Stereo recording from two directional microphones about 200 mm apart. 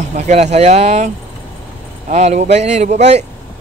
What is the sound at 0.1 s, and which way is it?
Speech, 35° right (ahead or behind).